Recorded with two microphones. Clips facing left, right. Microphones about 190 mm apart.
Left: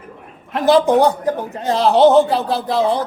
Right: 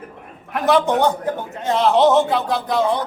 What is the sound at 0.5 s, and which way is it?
Speech, 30° left (ahead or behind).